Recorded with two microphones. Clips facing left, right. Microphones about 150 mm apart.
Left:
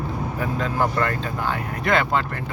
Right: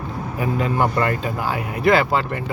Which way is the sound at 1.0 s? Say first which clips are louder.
Right 3 dB; 10° right (ahead or behind).